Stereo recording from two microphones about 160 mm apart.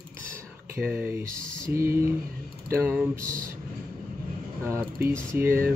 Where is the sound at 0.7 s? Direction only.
10° right (ahead or behind).